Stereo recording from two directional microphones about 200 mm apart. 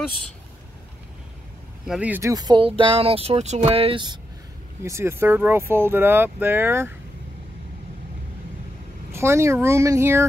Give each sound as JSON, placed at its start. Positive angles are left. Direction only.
{"t": 1.9, "sound": "speech", "side_deg": -5}
{"t": 4.8, "sound": "speech", "side_deg": -15}
{"t": 9.1, "sound": "speech", "side_deg": -15}